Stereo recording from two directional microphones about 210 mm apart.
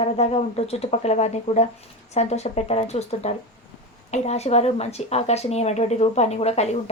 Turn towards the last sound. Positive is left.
turn(degrees=30)  # may be behind; listen again after turning